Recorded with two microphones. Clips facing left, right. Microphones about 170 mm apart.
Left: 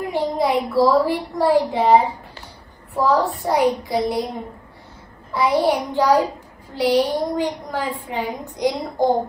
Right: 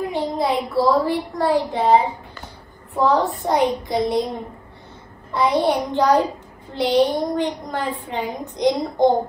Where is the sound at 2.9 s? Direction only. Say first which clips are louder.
Even; centre (ahead or behind).